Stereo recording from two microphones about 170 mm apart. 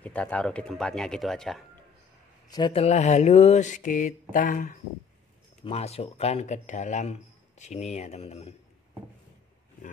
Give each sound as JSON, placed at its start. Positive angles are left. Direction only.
{"t": 0.0, "sound": "speech", "side_deg": 10}
{"t": 2.5, "sound": "mantra", "side_deg": 30}
{"t": 5.6, "sound": "a man's voice", "side_deg": 35}